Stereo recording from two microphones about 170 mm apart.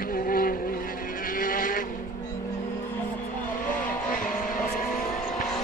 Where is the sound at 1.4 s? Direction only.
55° left (ahead or behind).